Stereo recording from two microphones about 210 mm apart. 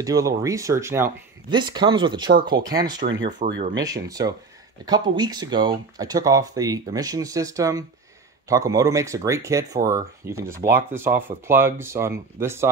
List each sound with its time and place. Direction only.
0.0 s speech: 15° right (ahead or behind)
3.0 s speech: 60° right (ahead or behind)
3.3 s speech: 50° right (ahead or behind)
3.7 s speech: 15° right (ahead or behind)